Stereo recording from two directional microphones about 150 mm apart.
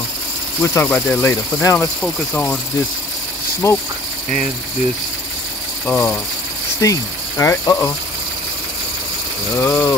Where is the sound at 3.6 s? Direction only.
15° left (ahead or behind).